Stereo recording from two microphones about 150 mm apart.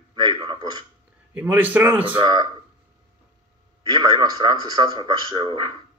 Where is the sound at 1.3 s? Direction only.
10° right (ahead or behind).